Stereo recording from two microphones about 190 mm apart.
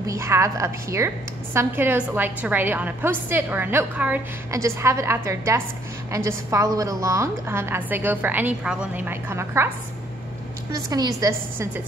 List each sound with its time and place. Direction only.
0.0 s a woman's voice: 15° right (ahead or behind)
10.7 s a woman's voice: 20° right (ahead or behind)